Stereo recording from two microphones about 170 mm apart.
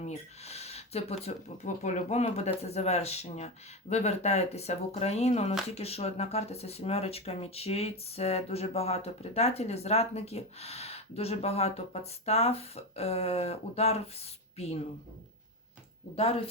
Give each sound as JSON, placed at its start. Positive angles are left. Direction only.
{"t": 0.0, "sound": "speech", "side_deg": 40}